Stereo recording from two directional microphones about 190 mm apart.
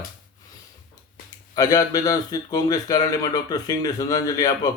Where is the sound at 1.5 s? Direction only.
20° left (ahead or behind).